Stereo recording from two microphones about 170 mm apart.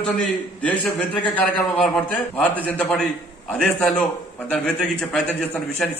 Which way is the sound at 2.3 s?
10° left (ahead or behind).